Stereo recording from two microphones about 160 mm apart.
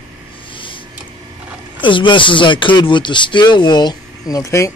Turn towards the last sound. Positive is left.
turn(degrees=20)  # may be behind; listen again after turning